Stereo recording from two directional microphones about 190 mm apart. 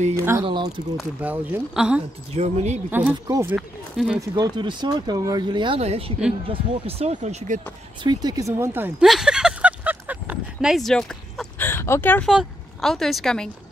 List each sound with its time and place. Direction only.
0.4 s speech: 25° right (ahead or behind)
0.9 s speech: 10° right (ahead or behind)
2.3 s speech: 35° right (ahead or behind)
2.9 s speech: 10° right (ahead or behind)
4.2 s speech: 25° right (ahead or behind); by 7.6 s 40° right (ahead or behind)
8.0 s speech: 20° right (ahead or behind)
9.0 s a sound: centre (ahead or behind)
12.3 s speech: centre (ahead or behind)